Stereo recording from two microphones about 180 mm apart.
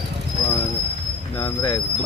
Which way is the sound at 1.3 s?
10° left (ahead or behind).